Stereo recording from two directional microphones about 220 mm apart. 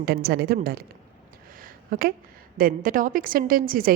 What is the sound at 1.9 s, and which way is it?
A woman's voice, 40° right (ahead or behind).